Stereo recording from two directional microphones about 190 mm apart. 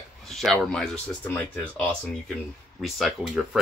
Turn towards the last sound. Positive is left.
turn(degrees=0)  # may be behind; listen again after turning